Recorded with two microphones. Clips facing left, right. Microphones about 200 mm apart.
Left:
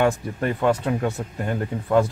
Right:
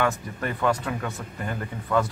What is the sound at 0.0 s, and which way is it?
Speech, 25° left (ahead or behind).